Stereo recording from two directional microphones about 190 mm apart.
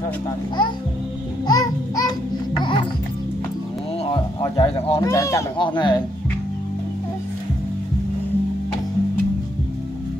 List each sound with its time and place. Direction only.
1.5 s music: 20° left (ahead or behind)
4.0 s a sound: 25° left (ahead or behind)
5.0 s speech: 15° left (ahead or behind)